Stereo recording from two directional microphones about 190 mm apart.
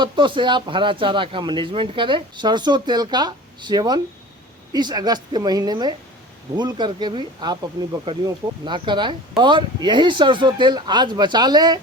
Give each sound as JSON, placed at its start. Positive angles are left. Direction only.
{"t": 0.0, "sound": "speech", "side_deg": -25}